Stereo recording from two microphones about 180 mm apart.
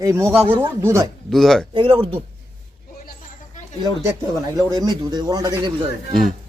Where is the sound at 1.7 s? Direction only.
30° right (ahead or behind).